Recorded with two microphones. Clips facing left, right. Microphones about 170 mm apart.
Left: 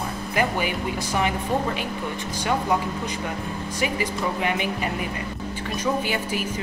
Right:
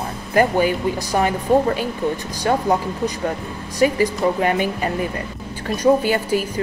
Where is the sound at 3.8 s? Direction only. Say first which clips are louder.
Right 10 dB; 45° right (ahead or behind).